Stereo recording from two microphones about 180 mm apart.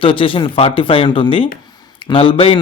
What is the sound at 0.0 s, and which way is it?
A man's voice, 30° left (ahead or behind).